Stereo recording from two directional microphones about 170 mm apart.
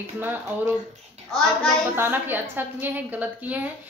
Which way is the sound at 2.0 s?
10° right (ahead or behind).